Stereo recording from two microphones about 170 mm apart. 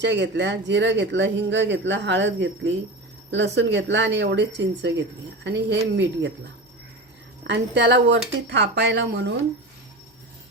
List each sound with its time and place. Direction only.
0.0 s speech: 90° right
7.4 s speech: 90° right